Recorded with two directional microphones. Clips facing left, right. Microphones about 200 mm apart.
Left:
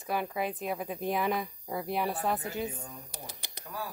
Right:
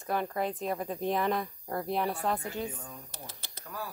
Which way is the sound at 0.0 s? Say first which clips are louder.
Right 1 dB; 5° left (ahead or behind).